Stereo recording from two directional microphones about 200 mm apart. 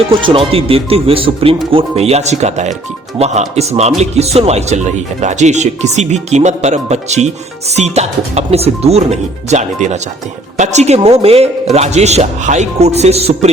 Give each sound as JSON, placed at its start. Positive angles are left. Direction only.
{"t": 0.2, "sound": "speech", "side_deg": -25}